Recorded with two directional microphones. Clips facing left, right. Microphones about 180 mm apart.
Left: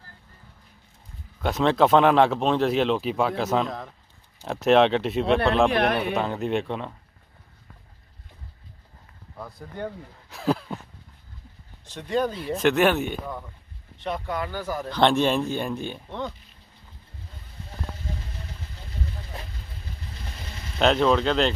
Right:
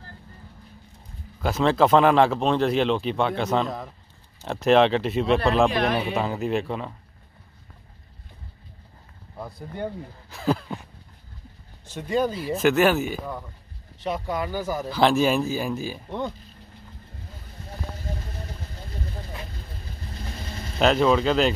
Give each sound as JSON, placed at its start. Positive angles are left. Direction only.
{"t": 1.4, "sound": "speech", "side_deg": 0}
{"t": 5.7, "sound": "speech", "side_deg": 60}
{"t": 6.1, "sound": "speech", "side_deg": -5}
{"t": 9.4, "sound": "speech", "side_deg": -10}
{"t": 10.3, "sound": "a sound", "side_deg": 0}
{"t": 11.8, "sound": "speech", "side_deg": -5}
{"t": 18.4, "sound": "vehicle", "side_deg": -40}
{"t": 20.8, "sound": "speech", "side_deg": -5}